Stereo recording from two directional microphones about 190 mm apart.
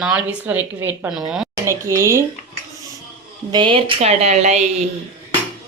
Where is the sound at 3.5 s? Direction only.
25° right (ahead or behind).